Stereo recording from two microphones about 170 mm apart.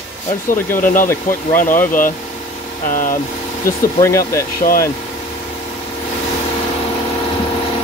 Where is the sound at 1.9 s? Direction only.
50° left (ahead or behind).